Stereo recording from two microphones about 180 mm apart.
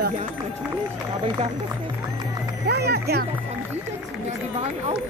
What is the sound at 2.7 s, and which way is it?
Speech, 65° right (ahead or behind).